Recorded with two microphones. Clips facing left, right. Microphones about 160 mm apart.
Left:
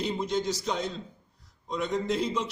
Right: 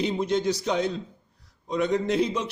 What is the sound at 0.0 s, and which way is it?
A man's voice, 65° right (ahead or behind).